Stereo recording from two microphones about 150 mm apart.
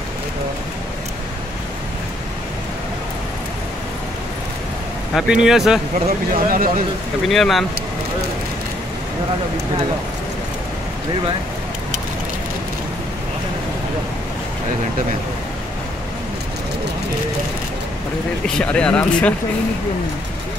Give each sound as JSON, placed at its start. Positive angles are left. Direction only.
{"t": 5.1, "sound": "speech", "side_deg": -5}
{"t": 6.3, "sound": "speech", "side_deg": -70}
{"t": 7.2, "sound": "speech", "side_deg": 0}
{"t": 18.6, "sound": "speech", "side_deg": 5}